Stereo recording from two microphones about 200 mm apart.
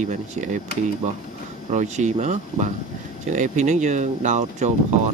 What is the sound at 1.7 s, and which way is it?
Speech, 35° right (ahead or behind).